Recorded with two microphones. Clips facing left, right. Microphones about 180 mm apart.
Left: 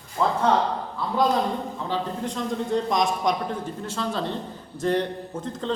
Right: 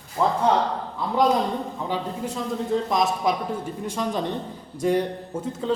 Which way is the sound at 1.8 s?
10° right (ahead or behind).